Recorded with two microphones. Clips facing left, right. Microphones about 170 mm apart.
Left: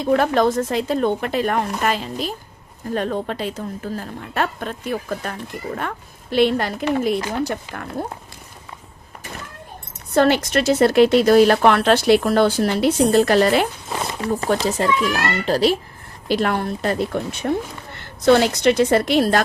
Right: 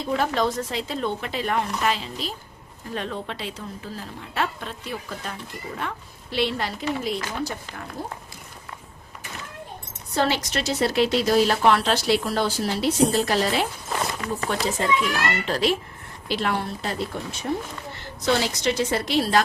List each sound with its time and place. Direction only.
0.0 s a woman's voice: 55° left (ahead or behind)
10.2 s speech: 55° left (ahead or behind)
14.2 s a child's voice: 35° left (ahead or behind)
16.3 s speech: 50° left (ahead or behind)